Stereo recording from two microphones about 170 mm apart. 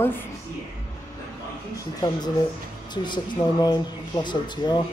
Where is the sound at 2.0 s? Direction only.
25° left (ahead or behind).